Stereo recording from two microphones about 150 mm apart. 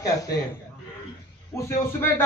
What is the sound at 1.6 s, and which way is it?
Speech, 15° left (ahead or behind).